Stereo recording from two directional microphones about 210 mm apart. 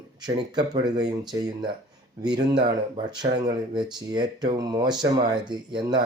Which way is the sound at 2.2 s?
20° right (ahead or behind).